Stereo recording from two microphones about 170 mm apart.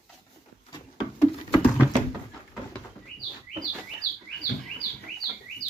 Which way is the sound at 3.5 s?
55° left (ahead or behind).